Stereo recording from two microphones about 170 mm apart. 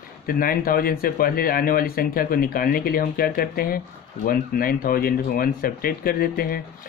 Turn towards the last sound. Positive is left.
turn(degrees=60)  # may be behind; listen again after turning